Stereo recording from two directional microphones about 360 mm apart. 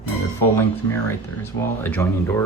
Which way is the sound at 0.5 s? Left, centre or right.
Centre.